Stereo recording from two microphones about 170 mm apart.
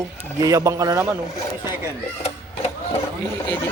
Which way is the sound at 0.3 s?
20° right (ahead or behind).